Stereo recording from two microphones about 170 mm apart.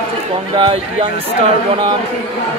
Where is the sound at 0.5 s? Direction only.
30° right (ahead or behind).